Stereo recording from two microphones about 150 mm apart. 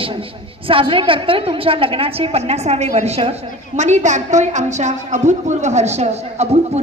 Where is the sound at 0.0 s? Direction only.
35° right (ahead or behind).